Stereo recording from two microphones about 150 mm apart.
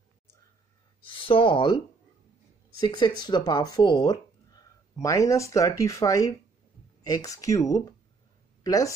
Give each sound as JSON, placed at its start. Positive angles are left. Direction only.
{"t": 1.0, "sound": "speech", "side_deg": 35}
{"t": 2.8, "sound": "speech", "side_deg": 30}